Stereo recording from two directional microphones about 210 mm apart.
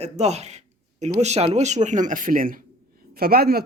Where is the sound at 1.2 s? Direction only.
30° right (ahead or behind).